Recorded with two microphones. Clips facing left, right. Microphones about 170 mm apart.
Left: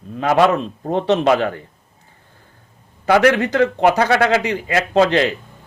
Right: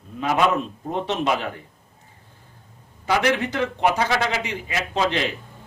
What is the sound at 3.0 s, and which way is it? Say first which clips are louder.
Speech: left 7 dB; 65° left (ahead or behind).